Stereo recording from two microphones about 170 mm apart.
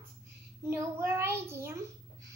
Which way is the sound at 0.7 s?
15° right (ahead or behind).